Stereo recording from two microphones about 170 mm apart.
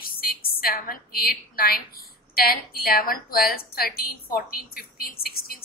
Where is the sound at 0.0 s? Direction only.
60° left (ahead or behind).